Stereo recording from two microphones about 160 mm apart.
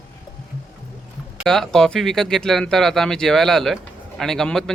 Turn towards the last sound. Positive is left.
turn(degrees=5)  # may be behind; listen again after turning